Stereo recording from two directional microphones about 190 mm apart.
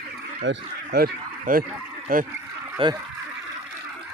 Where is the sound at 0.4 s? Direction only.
60° right (ahead or behind).